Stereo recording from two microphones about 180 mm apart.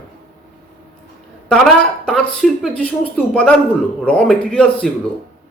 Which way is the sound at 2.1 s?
5° left (ahead or behind).